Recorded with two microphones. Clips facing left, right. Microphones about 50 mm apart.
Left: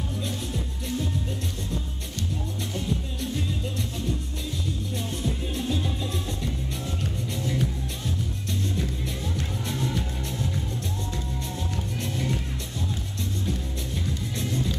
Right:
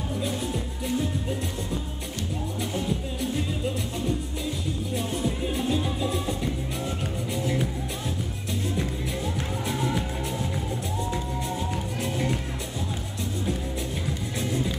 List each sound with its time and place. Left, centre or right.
0.2 s music: centre
2.7 s music: centre
4.9 s music: centre
9.7 s music: centre
12.0 s music: centre
14.4 s music: centre